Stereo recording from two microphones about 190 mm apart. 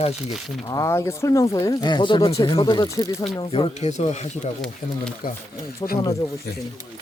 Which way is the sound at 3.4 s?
30° left (ahead or behind).